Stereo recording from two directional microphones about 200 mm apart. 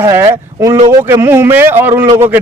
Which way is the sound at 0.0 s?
15° right (ahead or behind).